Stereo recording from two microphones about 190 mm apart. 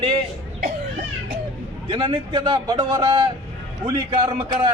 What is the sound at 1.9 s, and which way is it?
A man's voice, 25° right (ahead or behind).